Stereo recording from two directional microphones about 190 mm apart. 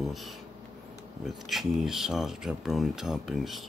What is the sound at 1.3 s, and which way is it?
Speech, centre (ahead or behind).